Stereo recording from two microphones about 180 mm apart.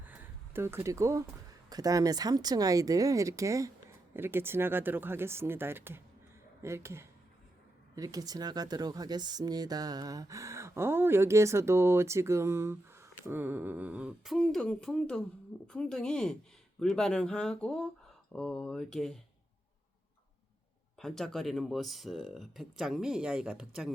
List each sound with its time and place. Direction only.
0.0 s a sound: 10° right (ahead or behind)
1.7 s speech: 20° right (ahead or behind); by 19.2 s centre (ahead or behind)
21.0 s speech: centre (ahead or behind)